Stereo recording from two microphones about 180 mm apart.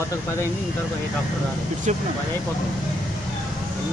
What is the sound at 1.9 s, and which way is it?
Speech, 40° right (ahead or behind).